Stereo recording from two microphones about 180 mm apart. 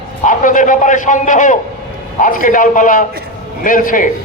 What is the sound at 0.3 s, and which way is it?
A man's voice, 45° left (ahead or behind).